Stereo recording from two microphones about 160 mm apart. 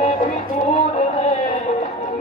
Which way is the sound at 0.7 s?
45° left (ahead or behind).